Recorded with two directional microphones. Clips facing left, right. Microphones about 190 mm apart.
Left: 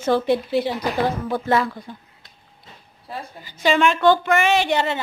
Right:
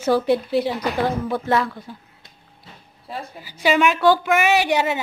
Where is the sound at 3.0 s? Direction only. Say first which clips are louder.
Right 1 dB; 5° right (ahead or behind).